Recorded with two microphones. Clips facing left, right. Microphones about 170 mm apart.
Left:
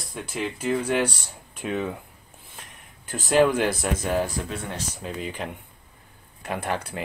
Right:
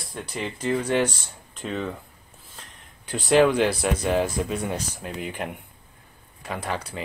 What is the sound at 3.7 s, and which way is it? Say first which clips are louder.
Speech: right 2 dB; 10° right (ahead or behind).